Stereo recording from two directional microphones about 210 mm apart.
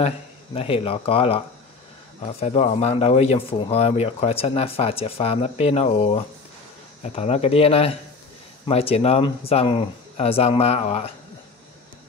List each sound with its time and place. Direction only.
0.6 s speech: 25° left (ahead or behind)